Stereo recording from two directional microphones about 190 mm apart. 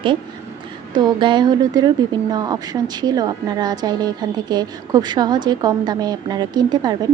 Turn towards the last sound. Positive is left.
turn(degrees=-20)  # may be behind; listen again after turning